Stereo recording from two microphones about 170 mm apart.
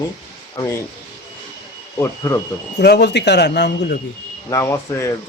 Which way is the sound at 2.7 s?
75° left (ahead or behind).